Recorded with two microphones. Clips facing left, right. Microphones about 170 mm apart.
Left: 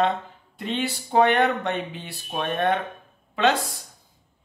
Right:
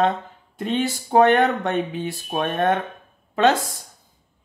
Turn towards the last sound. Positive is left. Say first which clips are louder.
# right 4 dB
turn(degrees=-45)  # may be behind; listen again after turning